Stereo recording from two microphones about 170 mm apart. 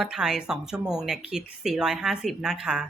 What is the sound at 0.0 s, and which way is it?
Speech, 5° right (ahead or behind).